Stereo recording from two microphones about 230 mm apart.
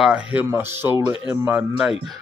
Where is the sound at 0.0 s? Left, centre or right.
Centre.